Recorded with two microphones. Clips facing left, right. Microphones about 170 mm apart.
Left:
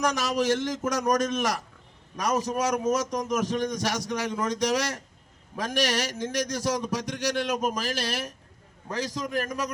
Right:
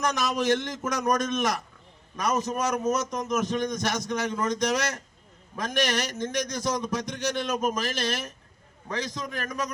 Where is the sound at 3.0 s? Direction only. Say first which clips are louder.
Left 1 dB; 35° left (ahead or behind).